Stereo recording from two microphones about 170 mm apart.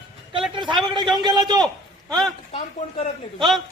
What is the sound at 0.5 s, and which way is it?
Speech, 25° right (ahead or behind).